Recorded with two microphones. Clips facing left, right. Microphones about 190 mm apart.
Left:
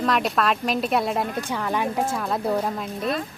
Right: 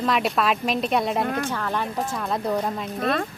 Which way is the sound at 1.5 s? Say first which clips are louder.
Left 2 dB; 10° left (ahead or behind).